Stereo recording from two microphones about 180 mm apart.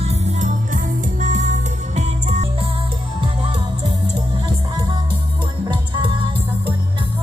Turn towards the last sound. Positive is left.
turn(degrees=-25)  # may be behind; listen again after turning